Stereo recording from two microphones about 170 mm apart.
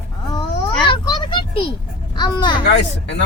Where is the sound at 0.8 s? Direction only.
25° left (ahead or behind).